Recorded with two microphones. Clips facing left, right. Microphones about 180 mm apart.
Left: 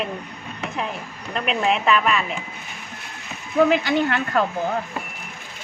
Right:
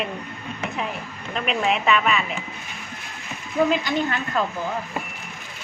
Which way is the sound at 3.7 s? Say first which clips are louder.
Left 3 dB; 65° left (ahead or behind).